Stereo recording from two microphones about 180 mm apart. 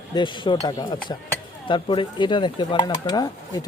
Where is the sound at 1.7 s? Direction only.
25° left (ahead or behind).